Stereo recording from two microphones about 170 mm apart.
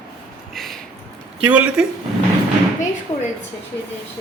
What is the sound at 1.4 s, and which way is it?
Speech, 10° right (ahead or behind).